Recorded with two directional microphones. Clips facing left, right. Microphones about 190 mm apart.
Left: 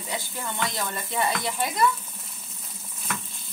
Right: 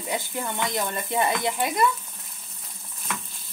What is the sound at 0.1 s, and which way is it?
Speech, 20° right (ahead or behind).